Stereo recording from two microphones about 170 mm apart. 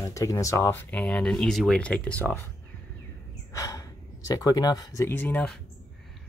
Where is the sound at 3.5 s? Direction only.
20° left (ahead or behind).